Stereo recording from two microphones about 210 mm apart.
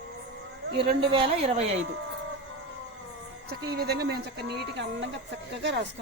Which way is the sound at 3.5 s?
50° right (ahead or behind).